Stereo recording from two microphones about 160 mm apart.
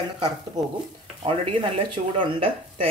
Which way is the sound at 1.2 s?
35° right (ahead or behind).